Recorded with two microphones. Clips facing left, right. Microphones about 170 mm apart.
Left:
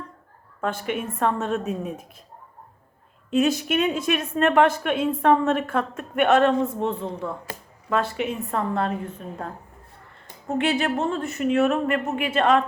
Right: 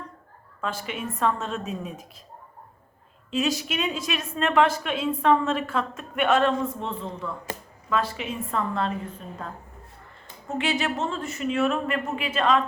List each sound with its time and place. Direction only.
0.6 s a woman's voice: 55° left (ahead or behind)
3.2 s a woman's voice: 55° left (ahead or behind)
10.6 s a woman's voice: 55° left (ahead or behind)